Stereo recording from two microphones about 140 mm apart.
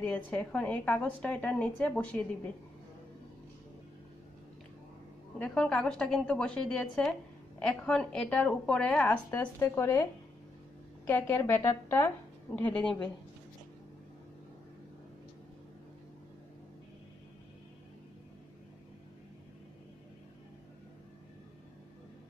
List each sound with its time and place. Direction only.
0.0 s a woman's voice: 10° left (ahead or behind)
5.4 s a woman's voice: 5° left (ahead or behind)
11.1 s a woman's voice: 15° left (ahead or behind)